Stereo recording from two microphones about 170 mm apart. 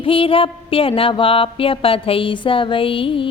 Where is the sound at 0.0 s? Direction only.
30° left (ahead or behind).